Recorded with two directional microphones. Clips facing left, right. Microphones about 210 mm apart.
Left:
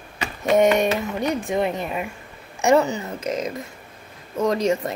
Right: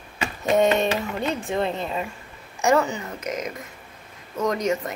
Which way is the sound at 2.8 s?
35° left (ahead or behind).